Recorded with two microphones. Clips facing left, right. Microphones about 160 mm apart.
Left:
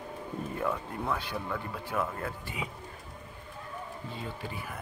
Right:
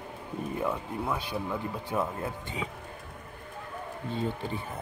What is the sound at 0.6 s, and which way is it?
Speech, 15° right (ahead or behind).